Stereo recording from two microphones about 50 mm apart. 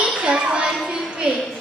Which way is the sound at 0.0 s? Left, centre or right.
Centre.